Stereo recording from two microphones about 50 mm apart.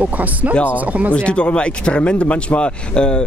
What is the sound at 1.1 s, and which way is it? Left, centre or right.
Speech, left.